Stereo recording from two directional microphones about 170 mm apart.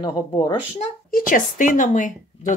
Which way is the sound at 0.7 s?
50° left (ahead or behind).